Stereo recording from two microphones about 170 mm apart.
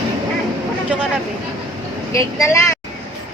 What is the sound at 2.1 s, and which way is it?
Speech, 20° left (ahead or behind).